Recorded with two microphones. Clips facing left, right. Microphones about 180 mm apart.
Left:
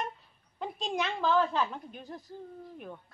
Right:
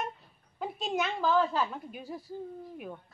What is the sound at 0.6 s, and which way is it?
A woman's voice, 5° right (ahead or behind).